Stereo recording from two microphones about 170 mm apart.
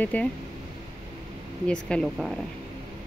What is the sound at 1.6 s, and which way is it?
Speech, 5° left (ahead or behind).